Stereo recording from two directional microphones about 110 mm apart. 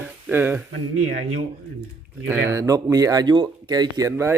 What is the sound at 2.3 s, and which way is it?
Speech, 25° right (ahead or behind).